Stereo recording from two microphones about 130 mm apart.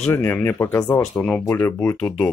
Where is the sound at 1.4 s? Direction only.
20° left (ahead or behind).